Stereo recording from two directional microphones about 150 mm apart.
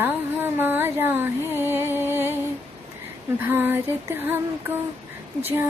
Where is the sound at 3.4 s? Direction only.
15° right (ahead or behind).